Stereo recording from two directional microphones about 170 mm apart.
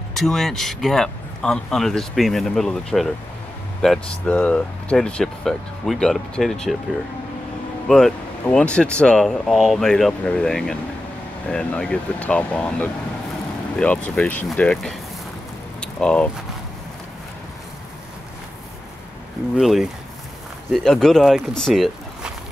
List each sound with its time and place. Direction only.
0.1 s speech: centre (ahead or behind)
7.9 s speech: 5° left (ahead or behind)
15.8 s a sound: 5° left (ahead or behind)
19.5 s speech: centre (ahead or behind)